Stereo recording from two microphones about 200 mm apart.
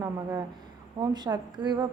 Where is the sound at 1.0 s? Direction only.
20° right (ahead or behind).